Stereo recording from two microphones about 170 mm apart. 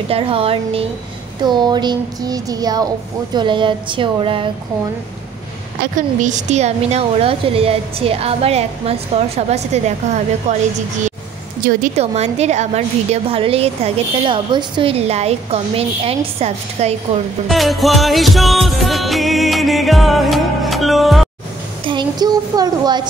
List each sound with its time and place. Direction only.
0.1 s a woman's voice: 35° right (ahead or behind)
5.9 s a woman's voice: 45° right (ahead or behind)
11.6 s a woman's voice: 45° right (ahead or behind)
17.5 s music: centre (ahead or behind)
21.8 s speech: 25° right (ahead or behind)